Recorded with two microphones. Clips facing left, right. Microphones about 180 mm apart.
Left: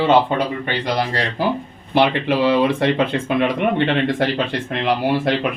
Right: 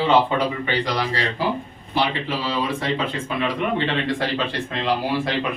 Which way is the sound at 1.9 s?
60° left (ahead or behind).